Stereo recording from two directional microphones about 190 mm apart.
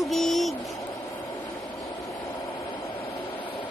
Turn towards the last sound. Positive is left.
turn(degrees=20)  # may be behind; listen again after turning